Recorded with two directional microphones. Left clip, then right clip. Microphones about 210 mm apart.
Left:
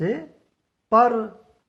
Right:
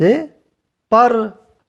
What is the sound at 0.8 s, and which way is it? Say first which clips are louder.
Speech: right 5 dB; 30° right (ahead or behind).